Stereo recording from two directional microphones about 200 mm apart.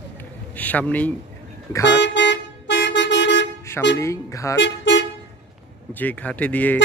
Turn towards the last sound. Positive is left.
turn(degrees=10)  # may be behind; listen again after turning